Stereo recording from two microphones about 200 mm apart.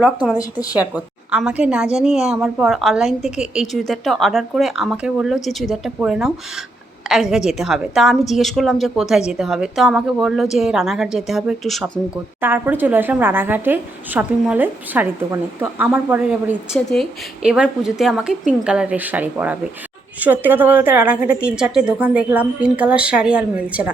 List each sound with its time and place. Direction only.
0.0 s a woman's voice: 5° right (ahead or behind)